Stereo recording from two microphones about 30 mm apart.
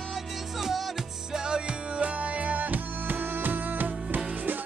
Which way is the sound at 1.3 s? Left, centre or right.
Right.